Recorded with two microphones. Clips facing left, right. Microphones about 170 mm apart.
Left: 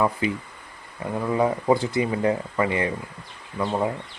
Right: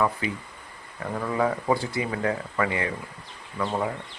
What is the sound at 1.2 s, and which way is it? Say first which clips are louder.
Speech: left 3 dB; 20° left (ahead or behind).